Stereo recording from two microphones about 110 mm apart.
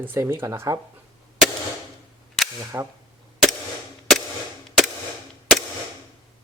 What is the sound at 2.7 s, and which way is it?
Speech, 25° right (ahead or behind).